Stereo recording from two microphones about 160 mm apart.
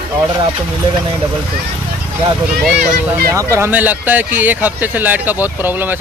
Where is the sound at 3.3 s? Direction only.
15° right (ahead or behind).